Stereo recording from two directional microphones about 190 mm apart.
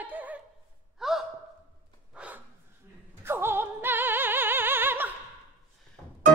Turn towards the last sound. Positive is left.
turn(degrees=-10)  # may be behind; listen again after turning